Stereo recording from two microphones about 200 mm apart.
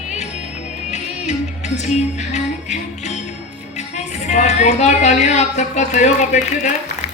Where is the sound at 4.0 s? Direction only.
35° left (ahead or behind).